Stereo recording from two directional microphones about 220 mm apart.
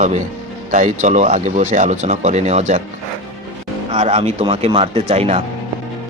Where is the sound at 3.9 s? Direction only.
30° right (ahead or behind).